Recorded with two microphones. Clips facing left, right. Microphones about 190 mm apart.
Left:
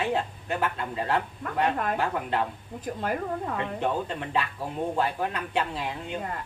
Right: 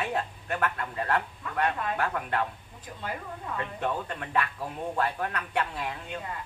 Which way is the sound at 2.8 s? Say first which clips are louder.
Left 8 dB; 50° left (ahead or behind).